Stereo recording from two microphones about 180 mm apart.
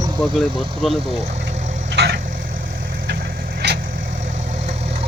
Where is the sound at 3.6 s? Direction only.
65° right (ahead or behind).